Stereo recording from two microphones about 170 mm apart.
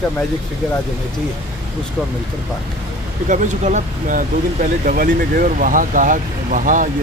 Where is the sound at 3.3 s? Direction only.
45° right (ahead or behind).